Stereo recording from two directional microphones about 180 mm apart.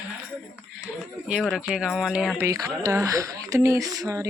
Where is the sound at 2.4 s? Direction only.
20° right (ahead or behind).